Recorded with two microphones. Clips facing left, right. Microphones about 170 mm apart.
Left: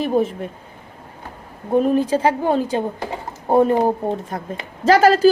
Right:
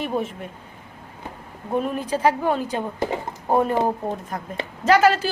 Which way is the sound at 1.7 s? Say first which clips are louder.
Left 7 dB; 35° left (ahead or behind).